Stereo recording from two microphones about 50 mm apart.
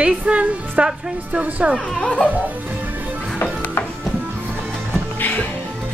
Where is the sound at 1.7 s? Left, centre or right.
Centre.